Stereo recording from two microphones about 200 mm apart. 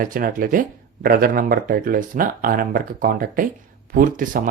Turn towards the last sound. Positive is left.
turn(degrees=-45)  # may be behind; listen again after turning